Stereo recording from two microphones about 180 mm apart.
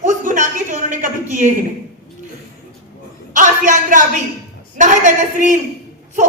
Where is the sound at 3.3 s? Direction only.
45° right (ahead or behind).